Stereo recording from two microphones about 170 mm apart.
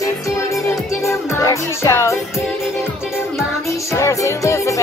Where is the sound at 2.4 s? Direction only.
5° right (ahead or behind).